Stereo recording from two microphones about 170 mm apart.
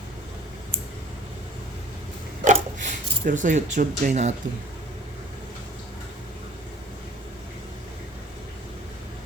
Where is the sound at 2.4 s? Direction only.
45° right (ahead or behind).